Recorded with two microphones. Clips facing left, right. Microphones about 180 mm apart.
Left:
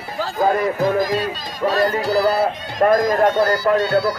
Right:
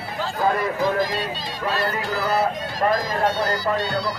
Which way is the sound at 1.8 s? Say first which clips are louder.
Left 10 dB; 40° left (ahead or behind).